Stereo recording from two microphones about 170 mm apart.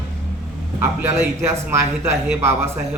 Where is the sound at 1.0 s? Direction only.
15° right (ahead or behind).